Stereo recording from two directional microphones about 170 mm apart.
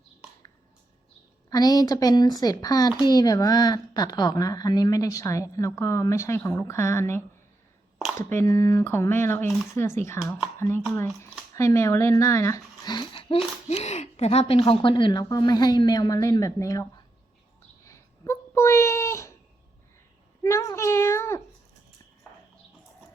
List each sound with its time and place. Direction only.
1.5 s speech: 20° left (ahead or behind)
8.3 s speech: 15° left (ahead or behind)
17.8 s a sound: 15° left (ahead or behind)
20.4 s a child's voice: 20° left (ahead or behind)